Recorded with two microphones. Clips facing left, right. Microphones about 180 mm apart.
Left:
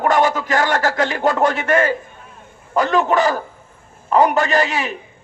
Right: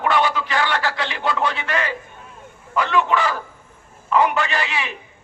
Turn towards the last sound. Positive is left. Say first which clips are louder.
# left 7 dB
turn(degrees=40)  # may be behind; listen again after turning